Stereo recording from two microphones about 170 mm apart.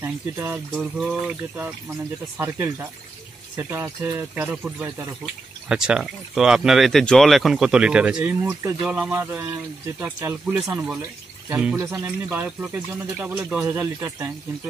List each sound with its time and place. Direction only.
0.0 s speech: 15° right (ahead or behind)
0.9 s speech: 5° right (ahead or behind)
2.3 s speech: 15° right (ahead or behind)
11.8 s speech: 15° right (ahead or behind)